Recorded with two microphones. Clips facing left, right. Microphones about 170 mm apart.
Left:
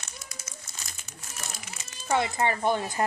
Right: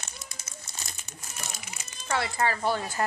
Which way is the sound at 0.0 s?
30° right (ahead or behind).